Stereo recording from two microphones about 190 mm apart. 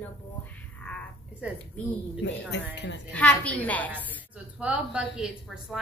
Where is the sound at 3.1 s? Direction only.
5° left (ahead or behind).